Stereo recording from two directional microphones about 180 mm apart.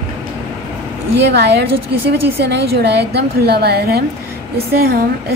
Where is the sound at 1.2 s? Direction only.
70° right (ahead or behind).